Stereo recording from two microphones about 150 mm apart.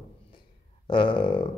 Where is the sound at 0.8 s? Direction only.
35° left (ahead or behind).